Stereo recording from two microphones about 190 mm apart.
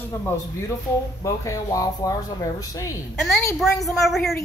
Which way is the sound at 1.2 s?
15° left (ahead or behind).